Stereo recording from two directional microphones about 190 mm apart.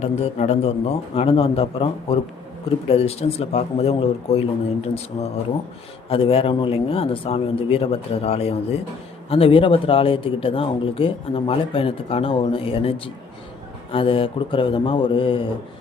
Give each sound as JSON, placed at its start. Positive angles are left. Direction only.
{"t": 0.0, "sound": "a man's voice", "side_deg": 35}
{"t": 6.1, "sound": "speech", "side_deg": 30}